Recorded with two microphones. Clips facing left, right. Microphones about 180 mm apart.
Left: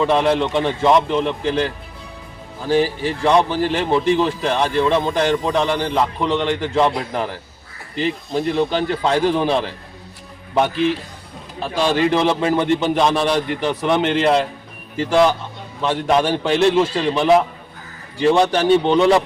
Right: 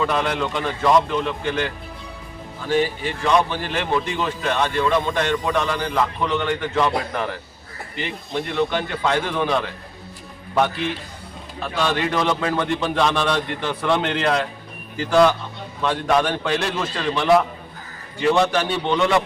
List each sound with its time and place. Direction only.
0.0 s a man's voice: 30° left (ahead or behind)
8.3 s a man's voice: 35° left (ahead or behind)
11.6 s a man's voice: 30° left (ahead or behind)
15.8 s a man's voice: 25° left (ahead or behind)